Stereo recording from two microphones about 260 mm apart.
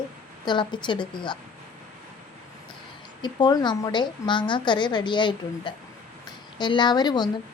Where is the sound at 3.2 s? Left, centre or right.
Centre.